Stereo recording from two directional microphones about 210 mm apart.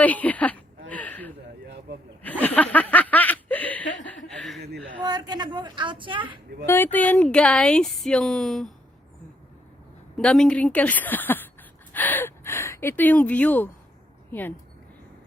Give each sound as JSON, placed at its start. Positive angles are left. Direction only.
{"t": 0.0, "sound": "a sound", "side_deg": 5}
{"t": 2.7, "sound": "snicker", "side_deg": 10}
{"t": 4.3, "sound": "chuckle", "side_deg": 0}
{"t": 5.0, "sound": "a sound", "side_deg": -20}
{"t": 6.7, "sound": "speech", "side_deg": 10}
{"t": 10.2, "sound": "a woman's voice", "side_deg": 5}